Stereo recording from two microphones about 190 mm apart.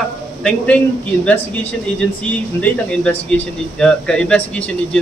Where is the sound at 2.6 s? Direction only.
5° left (ahead or behind).